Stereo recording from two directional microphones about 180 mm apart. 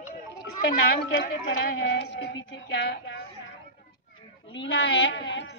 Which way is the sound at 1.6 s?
70° left (ahead or behind).